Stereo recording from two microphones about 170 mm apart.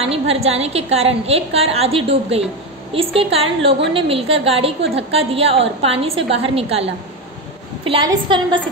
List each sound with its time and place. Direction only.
0.0 s a woman's voice: 35° right (ahead or behind)